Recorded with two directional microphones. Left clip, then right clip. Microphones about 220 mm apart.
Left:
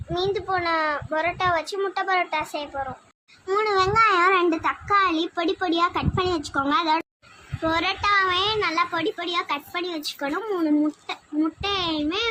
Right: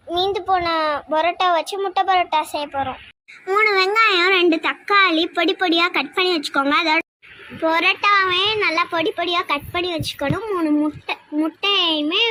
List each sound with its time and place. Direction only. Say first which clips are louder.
0.1 s a child's voice: right 6 dB; 15° right (ahead or behind)